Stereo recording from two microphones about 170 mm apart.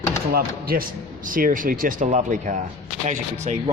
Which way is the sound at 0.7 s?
55° right (ahead or behind).